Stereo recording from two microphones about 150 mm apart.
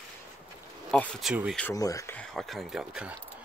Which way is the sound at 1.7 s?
25° left (ahead or behind).